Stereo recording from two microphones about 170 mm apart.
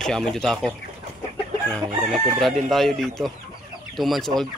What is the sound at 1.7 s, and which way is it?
Speech, centre (ahead or behind).